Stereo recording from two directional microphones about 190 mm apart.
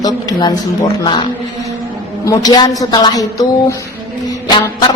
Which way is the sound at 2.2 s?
20° left (ahead or behind).